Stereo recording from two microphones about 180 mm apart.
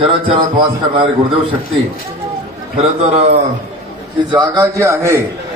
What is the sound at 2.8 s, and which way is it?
Speech, 35° right (ahead or behind).